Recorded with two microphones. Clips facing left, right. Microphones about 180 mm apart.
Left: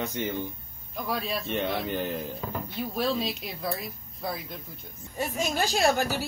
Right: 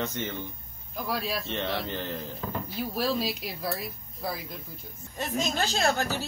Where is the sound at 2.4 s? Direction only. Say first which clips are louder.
Even; centre (ahead or behind).